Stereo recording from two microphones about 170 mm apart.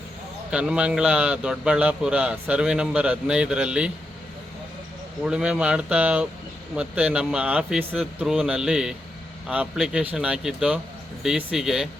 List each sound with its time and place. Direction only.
0.5 s a man's voice: 5° right (ahead or behind)
5.2 s a man's voice: 5° right (ahead or behind)